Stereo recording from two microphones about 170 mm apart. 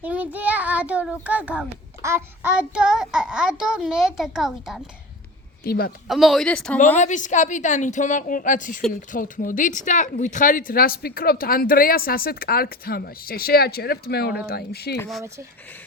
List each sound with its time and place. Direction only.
0.0 s a child's voice: 10° right (ahead or behind)
5.6 s speech: 65° left (ahead or behind)
6.1 s speech: centre (ahead or behind)
6.9 s a woman's voice: 45° left (ahead or behind); by 14.9 s 65° left (ahead or behind)